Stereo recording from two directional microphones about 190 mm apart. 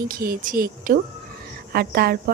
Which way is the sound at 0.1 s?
50° right (ahead or behind).